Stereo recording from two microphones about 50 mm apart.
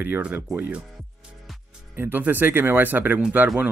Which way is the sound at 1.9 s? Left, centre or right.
Right.